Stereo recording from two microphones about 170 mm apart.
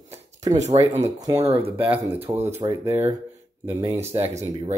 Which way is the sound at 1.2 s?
20° right (ahead or behind).